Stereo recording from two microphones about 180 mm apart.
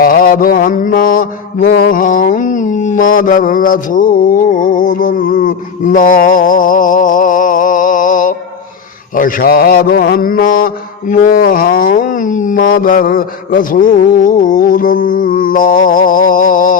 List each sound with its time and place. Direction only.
0.0 s mantra: 55° left (ahead or behind)